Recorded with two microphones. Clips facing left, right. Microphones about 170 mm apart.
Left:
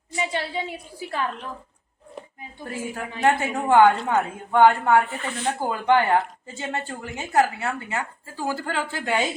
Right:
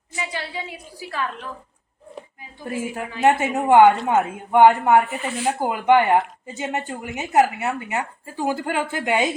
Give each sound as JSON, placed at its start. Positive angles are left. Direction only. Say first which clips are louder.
{"t": 0.2, "sound": "a woman's voice", "louder": "left 3 dB", "side_deg": 25}
{"t": 3.2, "sound": "speech", "louder": "right 3 dB", "side_deg": -20}